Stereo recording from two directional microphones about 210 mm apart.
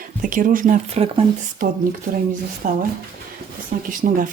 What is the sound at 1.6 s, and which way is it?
Speech, 40° right (ahead or behind).